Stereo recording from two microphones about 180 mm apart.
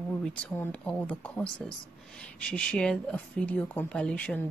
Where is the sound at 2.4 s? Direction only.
5° left (ahead or behind).